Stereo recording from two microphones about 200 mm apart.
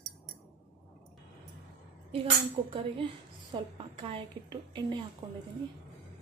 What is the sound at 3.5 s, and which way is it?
A woman's voice, 25° right (ahead or behind).